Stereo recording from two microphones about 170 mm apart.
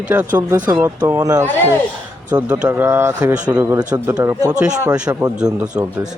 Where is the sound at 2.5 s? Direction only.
5° right (ahead or behind).